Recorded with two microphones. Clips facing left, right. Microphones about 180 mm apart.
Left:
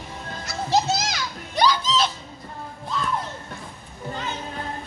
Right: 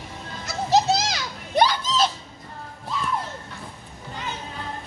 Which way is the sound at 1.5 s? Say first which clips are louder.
Right 1 dB; 55° right (ahead or behind).